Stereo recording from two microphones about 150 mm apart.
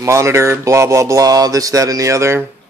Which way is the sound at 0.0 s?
20° right (ahead or behind).